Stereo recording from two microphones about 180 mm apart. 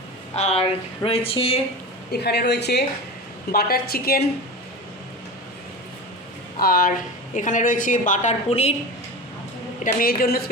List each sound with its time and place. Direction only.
0.3 s speech: 40° left (ahead or behind)
2.1 s a woman's voice: 65° left (ahead or behind)
3.5 s a woman's voice: 55° left (ahead or behind)
6.6 s a woman's voice: 55° left (ahead or behind); by 8.7 s 35° left (ahead or behind)
9.8 s a woman's voice: 55° left (ahead or behind)